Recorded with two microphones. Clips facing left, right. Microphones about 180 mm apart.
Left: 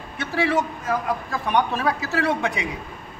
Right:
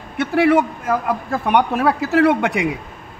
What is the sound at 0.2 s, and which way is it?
A man's voice, 60° right (ahead or behind).